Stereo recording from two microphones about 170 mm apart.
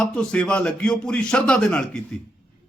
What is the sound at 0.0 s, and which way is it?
A man's voice, 5° left (ahead or behind).